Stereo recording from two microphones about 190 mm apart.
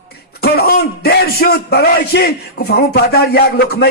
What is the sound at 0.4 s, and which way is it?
Speech, 55° left (ahead or behind).